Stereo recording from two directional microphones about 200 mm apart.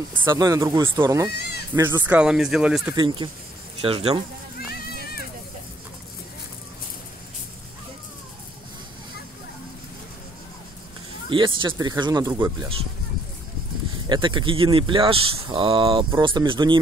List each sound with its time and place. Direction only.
0.3 s speech: 20° right (ahead or behind)
1.3 s speech: 55° left (ahead or behind)
1.8 s speech: 10° right (ahead or behind)
2.9 s speech: 20° right (ahead or behind)
11.2 s speech: 25° right (ahead or behind)
14.0 s speech: 25° right (ahead or behind)